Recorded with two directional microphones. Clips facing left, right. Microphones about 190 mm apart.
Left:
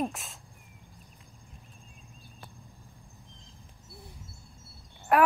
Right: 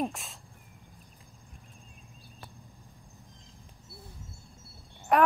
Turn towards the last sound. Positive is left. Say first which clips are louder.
# left 1 dB
turn(degrees=5)  # may be behind; listen again after turning